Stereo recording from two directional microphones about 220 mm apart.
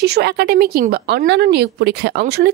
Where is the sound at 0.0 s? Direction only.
50° right (ahead or behind).